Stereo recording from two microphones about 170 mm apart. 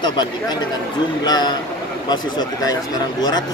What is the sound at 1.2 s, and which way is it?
A man's voice, 25° left (ahead or behind).